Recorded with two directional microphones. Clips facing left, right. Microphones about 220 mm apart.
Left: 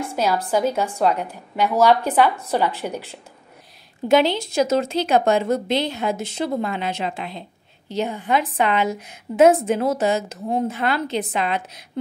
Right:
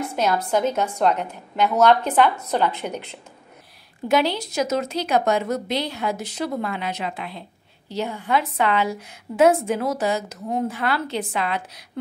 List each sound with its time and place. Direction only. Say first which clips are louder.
0.1 s a woman's voice: left 1 dB; 5° left (ahead or behind)
4.1 s a woman's voice: left 4 dB; 25° left (ahead or behind)